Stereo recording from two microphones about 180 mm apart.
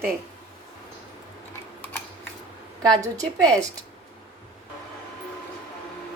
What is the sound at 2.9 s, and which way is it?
Speech, 20° right (ahead or behind).